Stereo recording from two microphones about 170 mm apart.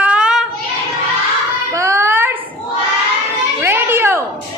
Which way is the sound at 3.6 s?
10° right (ahead or behind).